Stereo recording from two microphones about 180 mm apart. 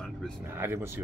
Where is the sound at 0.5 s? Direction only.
15° right (ahead or behind).